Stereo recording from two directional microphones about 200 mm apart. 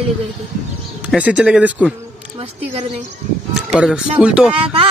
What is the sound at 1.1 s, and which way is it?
Speech, 5° right (ahead or behind).